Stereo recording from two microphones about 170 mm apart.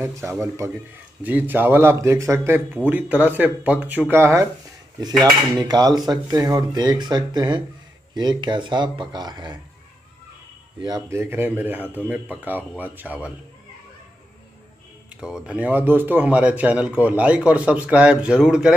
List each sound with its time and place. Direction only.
0.0 s speech: 15° right (ahead or behind)
10.8 s speech: 20° right (ahead or behind)
15.1 s speech: 5° right (ahead or behind)